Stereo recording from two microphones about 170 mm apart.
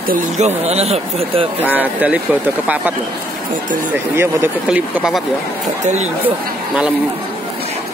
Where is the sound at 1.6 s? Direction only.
10° right (ahead or behind).